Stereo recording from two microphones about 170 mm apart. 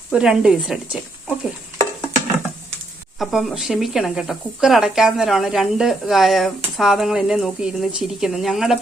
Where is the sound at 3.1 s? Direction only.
Centre (ahead or behind).